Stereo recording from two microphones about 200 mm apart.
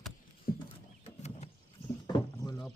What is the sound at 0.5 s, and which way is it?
Horse, 45° left (ahead or behind).